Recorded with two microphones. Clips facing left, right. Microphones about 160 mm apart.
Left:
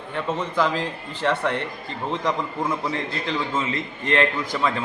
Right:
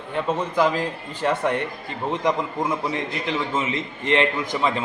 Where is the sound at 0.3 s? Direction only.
15° right (ahead or behind).